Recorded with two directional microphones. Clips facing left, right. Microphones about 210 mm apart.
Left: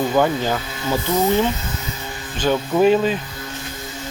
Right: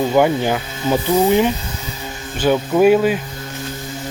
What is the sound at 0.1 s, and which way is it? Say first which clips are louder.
Speech: right 3 dB; 15° right (ahead or behind).